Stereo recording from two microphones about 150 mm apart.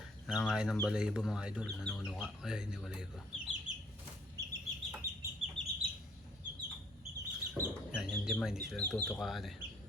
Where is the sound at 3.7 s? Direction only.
55° right (ahead or behind).